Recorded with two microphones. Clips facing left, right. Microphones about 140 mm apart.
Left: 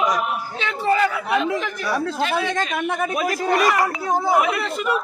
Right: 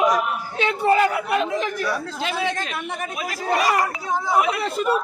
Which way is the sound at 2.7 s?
55° left (ahead or behind).